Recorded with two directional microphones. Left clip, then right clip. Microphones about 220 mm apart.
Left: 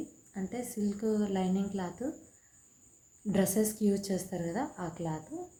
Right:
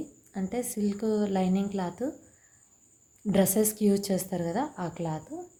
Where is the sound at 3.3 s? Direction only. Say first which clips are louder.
Right 5 dB; 35° right (ahead or behind).